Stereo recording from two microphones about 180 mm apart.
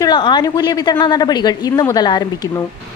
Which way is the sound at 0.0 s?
25° left (ahead or behind).